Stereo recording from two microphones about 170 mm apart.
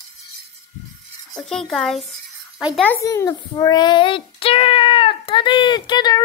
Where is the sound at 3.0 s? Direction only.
20° left (ahead or behind).